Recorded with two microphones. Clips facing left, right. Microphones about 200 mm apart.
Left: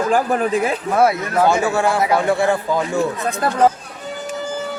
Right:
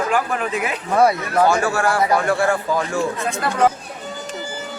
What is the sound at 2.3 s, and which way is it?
Speech, 20° left (ahead or behind).